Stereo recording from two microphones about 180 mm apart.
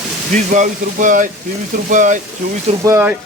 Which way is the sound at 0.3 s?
45° right (ahead or behind).